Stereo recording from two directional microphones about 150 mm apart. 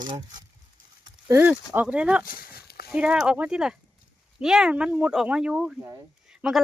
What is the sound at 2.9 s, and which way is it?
Speech, 5° right (ahead or behind).